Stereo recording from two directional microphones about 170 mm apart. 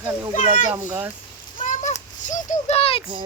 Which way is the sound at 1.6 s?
45° left (ahead or behind).